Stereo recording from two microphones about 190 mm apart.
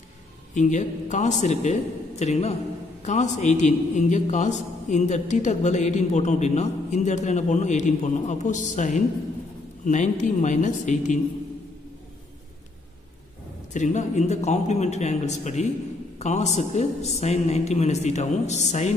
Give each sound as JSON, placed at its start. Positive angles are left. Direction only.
{"t": 0.6, "sound": "a man's voice", "side_deg": 40}
{"t": 13.7, "sound": "a man's voice", "side_deg": 40}